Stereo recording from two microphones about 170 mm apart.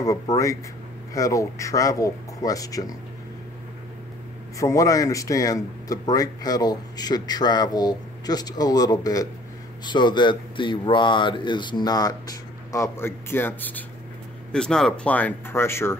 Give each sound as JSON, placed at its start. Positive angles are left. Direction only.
{"t": 0.0, "sound": "speech", "side_deg": 20}
{"t": 4.6, "sound": "speech", "side_deg": 20}